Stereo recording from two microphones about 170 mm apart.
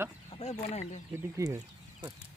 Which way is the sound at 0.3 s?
35° left (ahead or behind).